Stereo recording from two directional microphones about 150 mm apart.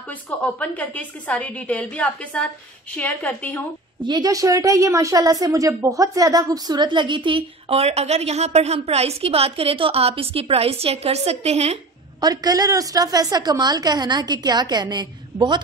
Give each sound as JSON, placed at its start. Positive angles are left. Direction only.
{"t": 0.1, "sound": "a woman's voice", "side_deg": 10}
{"t": 4.0, "sound": "a woman's voice", "side_deg": -25}
{"t": 12.2, "sound": "a woman's voice", "side_deg": -25}